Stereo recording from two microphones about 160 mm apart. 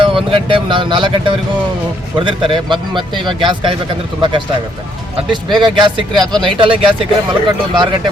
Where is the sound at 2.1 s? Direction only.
30° right (ahead or behind).